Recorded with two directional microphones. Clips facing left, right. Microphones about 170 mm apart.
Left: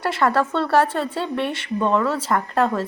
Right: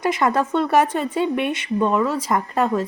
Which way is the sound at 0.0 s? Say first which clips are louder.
Even; 15° right (ahead or behind).